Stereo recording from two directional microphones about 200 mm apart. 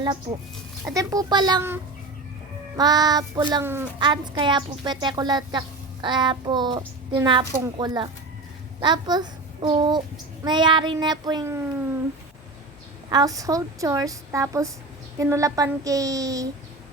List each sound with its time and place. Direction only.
0.0 s a woman's voice: 20° right (ahead or behind)
4.0 s a woman's voice: 25° right (ahead or behind)
13.1 s a woman's voice: 20° right (ahead or behind)